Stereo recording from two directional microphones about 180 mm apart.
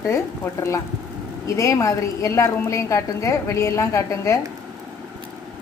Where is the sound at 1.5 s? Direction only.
15° left (ahead or behind).